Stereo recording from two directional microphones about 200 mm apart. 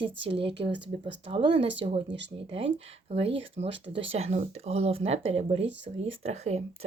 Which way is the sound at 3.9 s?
30° right (ahead or behind).